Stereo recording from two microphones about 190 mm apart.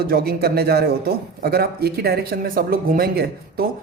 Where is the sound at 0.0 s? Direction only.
55° right (ahead or behind).